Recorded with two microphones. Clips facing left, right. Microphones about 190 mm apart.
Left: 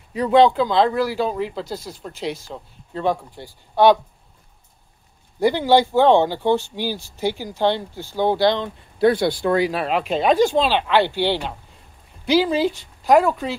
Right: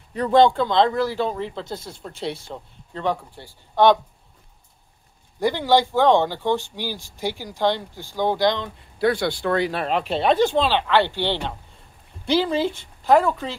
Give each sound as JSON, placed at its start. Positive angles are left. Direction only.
{"t": 0.1, "sound": "speech", "side_deg": 5}
{"t": 1.8, "sound": "speech", "side_deg": -30}
{"t": 2.9, "sound": "speech", "side_deg": 15}
{"t": 5.4, "sound": "speech", "side_deg": 15}